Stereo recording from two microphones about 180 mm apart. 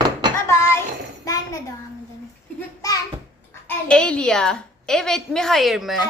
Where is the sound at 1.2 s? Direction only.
20° left (ahead or behind).